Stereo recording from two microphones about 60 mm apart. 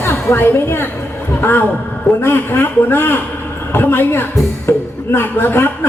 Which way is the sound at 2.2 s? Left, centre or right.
Left.